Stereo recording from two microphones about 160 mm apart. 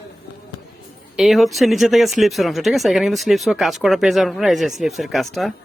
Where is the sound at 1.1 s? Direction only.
Centre (ahead or behind).